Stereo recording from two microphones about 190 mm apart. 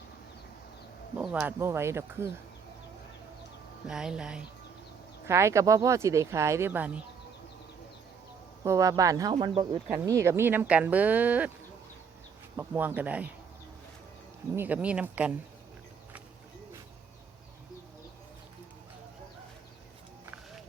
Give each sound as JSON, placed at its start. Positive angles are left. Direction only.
{"t": 1.2, "sound": "speech", "side_deg": -5}
{"t": 3.8, "sound": "speech", "side_deg": -5}
{"t": 8.6, "sound": "speech", "side_deg": -15}
{"t": 9.9, "sound": "speech", "side_deg": -10}
{"t": 12.5, "sound": "speech", "side_deg": -10}
{"t": 14.5, "sound": "speech", "side_deg": -10}